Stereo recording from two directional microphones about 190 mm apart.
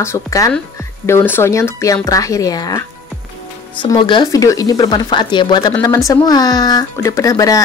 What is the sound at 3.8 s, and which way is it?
Speech, 25° left (ahead or behind).